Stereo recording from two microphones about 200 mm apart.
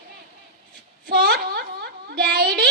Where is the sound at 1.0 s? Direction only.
55° right (ahead or behind).